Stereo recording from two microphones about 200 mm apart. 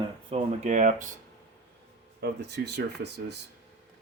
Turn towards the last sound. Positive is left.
turn(degrees=-55)  # may be behind; listen again after turning